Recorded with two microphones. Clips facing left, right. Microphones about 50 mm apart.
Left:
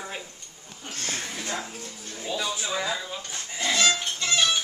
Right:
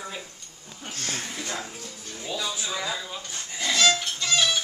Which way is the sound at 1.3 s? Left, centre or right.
Centre.